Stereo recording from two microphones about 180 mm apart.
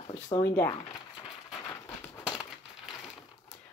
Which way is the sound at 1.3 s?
Centre (ahead or behind).